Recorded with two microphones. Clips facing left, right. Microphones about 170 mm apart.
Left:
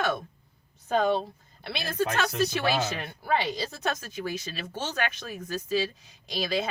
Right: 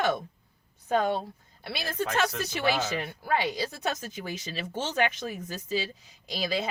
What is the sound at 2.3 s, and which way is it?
Speech, 15° right (ahead or behind).